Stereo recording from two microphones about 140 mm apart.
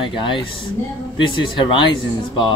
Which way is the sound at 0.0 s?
35° left (ahead or behind).